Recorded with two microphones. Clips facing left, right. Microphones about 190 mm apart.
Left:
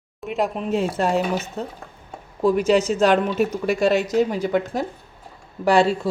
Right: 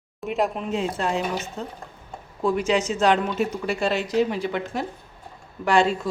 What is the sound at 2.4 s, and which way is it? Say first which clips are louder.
A woman's voice: left 5 dB; 40° left (ahead or behind).